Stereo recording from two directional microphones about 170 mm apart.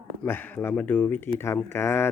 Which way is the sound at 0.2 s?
10° left (ahead or behind).